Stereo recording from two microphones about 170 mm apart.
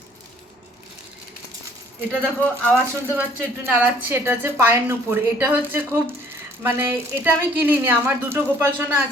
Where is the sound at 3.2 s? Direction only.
10° right (ahead or behind).